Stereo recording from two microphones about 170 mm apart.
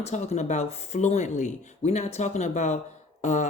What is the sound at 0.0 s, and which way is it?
Speech, 40° left (ahead or behind).